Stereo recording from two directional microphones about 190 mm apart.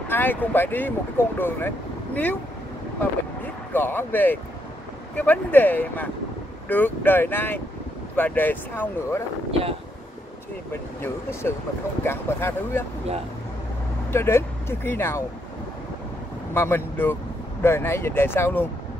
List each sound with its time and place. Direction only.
0.1 s speech: 10° left (ahead or behind)
3.7 s speech: 10° left (ahead or behind)
9.5 s speech: 30° right (ahead or behind)
10.7 s speech: 10° left (ahead or behind)
14.1 s speech: 10° left (ahead or behind)
16.5 s speech: 10° left (ahead or behind)